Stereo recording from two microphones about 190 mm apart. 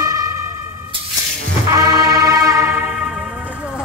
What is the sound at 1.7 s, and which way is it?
Music, 15° right (ahead or behind).